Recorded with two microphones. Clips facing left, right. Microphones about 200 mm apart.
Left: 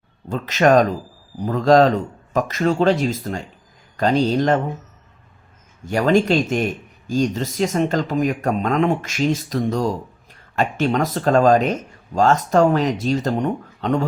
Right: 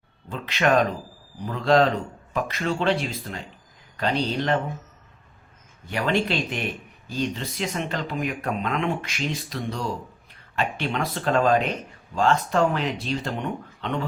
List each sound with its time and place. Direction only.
0.3 s speech: 45° left (ahead or behind)
5.8 s speech: 45° left (ahead or behind)